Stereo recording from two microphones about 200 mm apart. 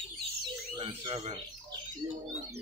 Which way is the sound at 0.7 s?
25° right (ahead or behind).